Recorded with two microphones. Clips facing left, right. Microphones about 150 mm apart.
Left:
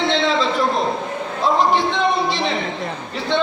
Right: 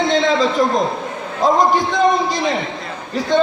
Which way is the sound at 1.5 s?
45° right (ahead or behind).